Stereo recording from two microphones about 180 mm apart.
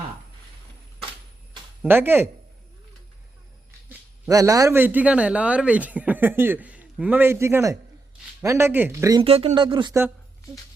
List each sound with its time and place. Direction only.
1.8 s speech: 10° right (ahead or behind)
4.3 s speech: 20° right (ahead or behind)
9.2 s speech: 35° right (ahead or behind)